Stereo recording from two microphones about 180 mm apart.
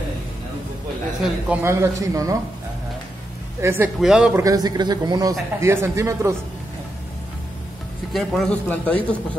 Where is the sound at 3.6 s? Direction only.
15° right (ahead or behind).